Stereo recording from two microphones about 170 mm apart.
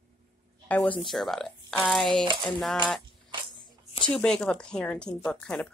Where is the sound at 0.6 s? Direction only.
10° left (ahead or behind).